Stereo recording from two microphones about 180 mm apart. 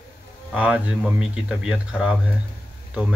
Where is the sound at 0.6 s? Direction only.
5° right (ahead or behind).